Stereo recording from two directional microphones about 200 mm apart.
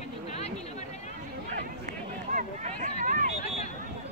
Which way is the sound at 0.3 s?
35° left (ahead or behind).